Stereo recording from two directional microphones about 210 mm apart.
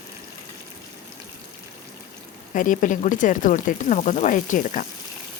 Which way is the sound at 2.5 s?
40° left (ahead or behind).